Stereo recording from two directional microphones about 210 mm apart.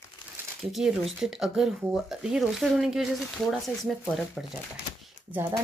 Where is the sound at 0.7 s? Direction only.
Centre (ahead or behind).